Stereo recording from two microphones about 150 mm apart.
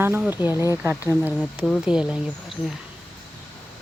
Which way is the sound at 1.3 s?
5° left (ahead or behind).